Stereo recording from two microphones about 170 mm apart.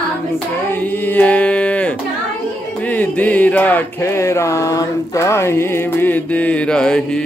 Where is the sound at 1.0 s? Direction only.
10° left (ahead or behind).